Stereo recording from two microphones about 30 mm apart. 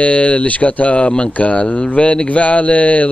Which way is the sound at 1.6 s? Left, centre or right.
Left.